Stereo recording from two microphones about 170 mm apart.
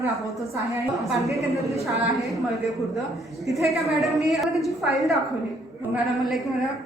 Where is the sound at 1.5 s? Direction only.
15° right (ahead or behind).